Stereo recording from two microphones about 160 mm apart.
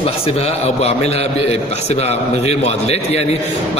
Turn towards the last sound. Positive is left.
turn(degrees=40)  # may be behind; listen again after turning